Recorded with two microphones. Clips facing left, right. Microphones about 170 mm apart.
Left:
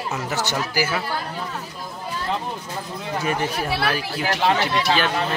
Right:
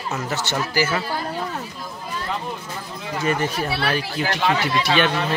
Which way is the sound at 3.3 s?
10° left (ahead or behind).